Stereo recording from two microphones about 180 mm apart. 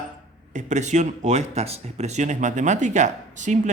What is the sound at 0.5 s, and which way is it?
Speech, 40° right (ahead or behind).